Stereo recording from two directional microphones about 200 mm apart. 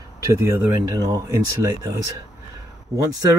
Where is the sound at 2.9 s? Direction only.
15° right (ahead or behind).